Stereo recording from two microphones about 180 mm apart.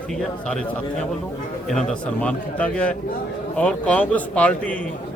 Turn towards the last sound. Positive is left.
turn(degrees=5)  # may be behind; listen again after turning